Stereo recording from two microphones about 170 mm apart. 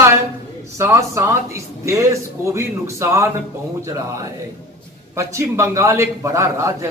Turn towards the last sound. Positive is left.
turn(degrees=-15)  # may be behind; listen again after turning